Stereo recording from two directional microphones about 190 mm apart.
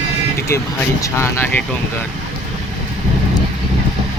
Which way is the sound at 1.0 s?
15° left (ahead or behind).